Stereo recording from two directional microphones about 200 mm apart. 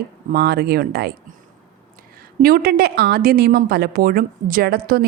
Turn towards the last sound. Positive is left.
turn(degrees=-50)  # may be behind; listen again after turning